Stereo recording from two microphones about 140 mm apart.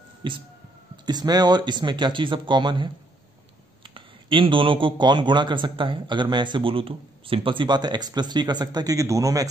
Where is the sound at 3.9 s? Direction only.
35° right (ahead or behind).